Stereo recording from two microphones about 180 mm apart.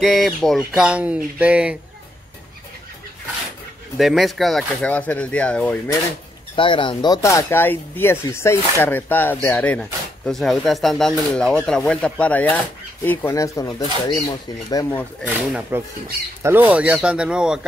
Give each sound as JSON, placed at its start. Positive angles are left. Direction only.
{"t": 0.0, "sound": "speech", "side_deg": 0}
{"t": 3.9, "sound": "speech", "side_deg": 0}
{"t": 6.5, "sound": "speech", "side_deg": 25}
{"t": 15.2, "sound": "speech", "side_deg": -5}